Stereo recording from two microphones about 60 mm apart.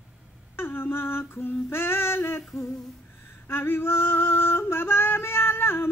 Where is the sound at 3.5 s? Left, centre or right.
Left.